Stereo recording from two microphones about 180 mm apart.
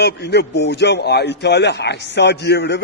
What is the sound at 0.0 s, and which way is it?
A man's voice, 65° left (ahead or behind).